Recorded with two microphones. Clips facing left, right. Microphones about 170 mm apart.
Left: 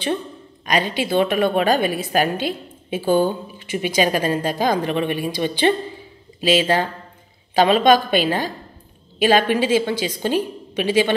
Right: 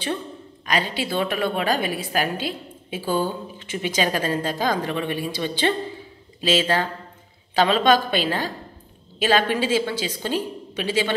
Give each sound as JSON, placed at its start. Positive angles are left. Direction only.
{"t": 0.7, "sound": "a woman's voice", "side_deg": 15}